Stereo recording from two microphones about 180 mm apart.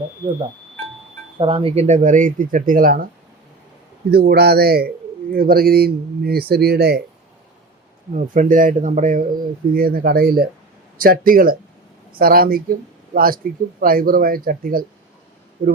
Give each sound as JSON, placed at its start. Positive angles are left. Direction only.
{"t": 1.4, "sound": "speech", "side_deg": -30}
{"t": 4.1, "sound": "speech", "side_deg": -60}
{"t": 8.1, "sound": "speech", "side_deg": -45}
{"t": 9.7, "sound": "speech", "side_deg": -55}